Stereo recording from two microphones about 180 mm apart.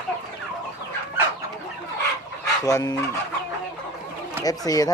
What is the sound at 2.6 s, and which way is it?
Speech, 20° left (ahead or behind).